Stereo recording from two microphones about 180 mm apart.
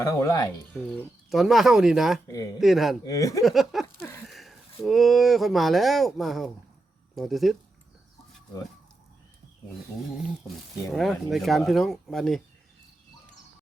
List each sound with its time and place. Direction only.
0.0 s speech: 20° left (ahead or behind)
0.7 s speech: 5° left (ahead or behind)
2.2 s speech: 20° left (ahead or behind)
2.6 s speech: centre (ahead or behind)
3.0 s speech: 20° left (ahead or behind)
3.4 s a sound: centre (ahead or behind)
4.3 s speech: centre (ahead or behind)
10.9 s speech: centre (ahead or behind)